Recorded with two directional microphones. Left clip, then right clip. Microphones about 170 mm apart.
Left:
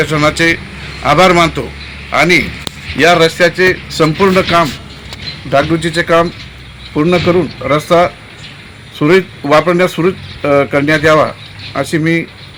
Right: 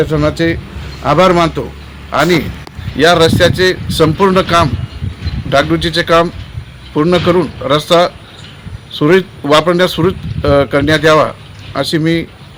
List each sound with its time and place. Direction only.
0.0 s a man's voice: 20° right (ahead or behind)
2.1 s a man's voice: 5° right (ahead or behind)
6.9 s a man's voice: 15° right (ahead or behind)
7.3 s a man's voice: 5° right (ahead or behind)
7.7 s a man's voice: 15° right (ahead or behind)
9.0 s a man's voice: 5° right (ahead or behind)